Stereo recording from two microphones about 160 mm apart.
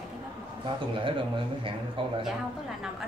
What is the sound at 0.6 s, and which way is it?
Speech, 30° right (ahead or behind).